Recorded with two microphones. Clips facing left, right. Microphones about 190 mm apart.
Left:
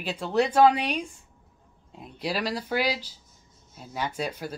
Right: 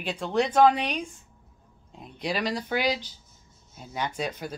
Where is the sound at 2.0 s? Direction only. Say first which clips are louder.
Even; 5° left (ahead or behind).